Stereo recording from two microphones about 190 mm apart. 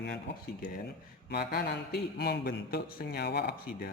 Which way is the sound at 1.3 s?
55° left (ahead or behind).